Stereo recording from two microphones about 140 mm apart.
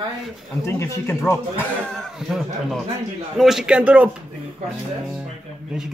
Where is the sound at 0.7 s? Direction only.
20° left (ahead or behind).